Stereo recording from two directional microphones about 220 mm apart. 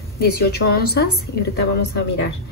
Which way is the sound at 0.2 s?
45° left (ahead or behind).